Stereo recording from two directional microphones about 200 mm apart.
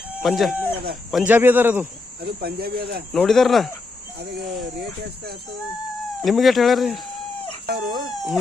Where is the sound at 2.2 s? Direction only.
50° right (ahead or behind).